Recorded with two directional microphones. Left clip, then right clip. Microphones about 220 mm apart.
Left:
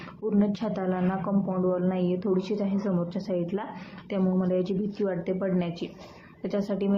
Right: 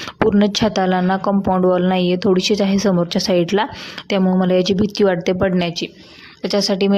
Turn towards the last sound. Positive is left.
turn(degrees=-45)  # may be behind; listen again after turning